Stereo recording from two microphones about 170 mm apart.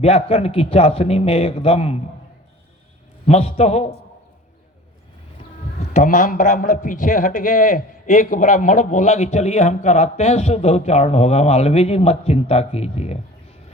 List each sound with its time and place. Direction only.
0.0 s a man's voice: 35° left (ahead or behind)
3.2 s a man's voice: 35° left (ahead or behind)
5.9 s a man's voice: 45° left (ahead or behind)